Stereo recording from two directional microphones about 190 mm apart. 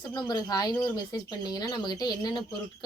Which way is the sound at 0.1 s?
20° left (ahead or behind).